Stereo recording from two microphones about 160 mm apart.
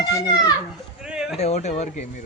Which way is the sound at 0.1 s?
25° left (ahead or behind).